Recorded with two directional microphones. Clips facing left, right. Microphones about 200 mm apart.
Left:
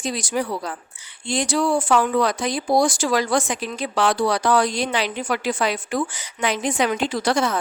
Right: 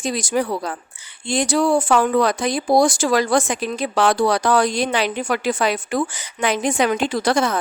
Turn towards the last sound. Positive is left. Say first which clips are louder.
# right 2 dB
turn(degrees=-50)  # may be behind; listen again after turning